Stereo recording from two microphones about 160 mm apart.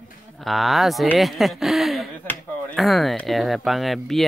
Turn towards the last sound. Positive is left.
turn(degrees=0)  # may be behind; listen again after turning